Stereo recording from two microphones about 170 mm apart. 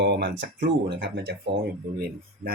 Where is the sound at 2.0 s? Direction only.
65° right (ahead or behind).